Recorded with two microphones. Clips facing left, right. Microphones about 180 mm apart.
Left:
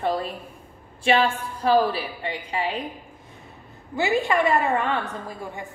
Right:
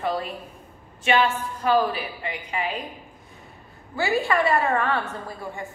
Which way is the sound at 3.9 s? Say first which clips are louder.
Left 1 dB; 20° left (ahead or behind).